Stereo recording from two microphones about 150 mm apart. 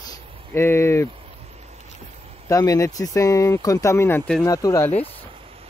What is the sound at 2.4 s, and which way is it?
Speech, 25° left (ahead or behind).